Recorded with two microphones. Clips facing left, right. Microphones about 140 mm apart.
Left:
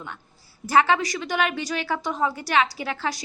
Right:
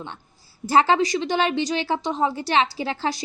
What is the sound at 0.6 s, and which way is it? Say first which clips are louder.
A woman's voice: right 2 dB; 30° right (ahead or behind).